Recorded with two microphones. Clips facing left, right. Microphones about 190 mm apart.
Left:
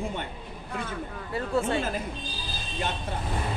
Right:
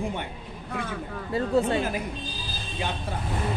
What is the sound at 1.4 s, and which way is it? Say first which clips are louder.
Speech: right 4 dB; 35° right (ahead or behind).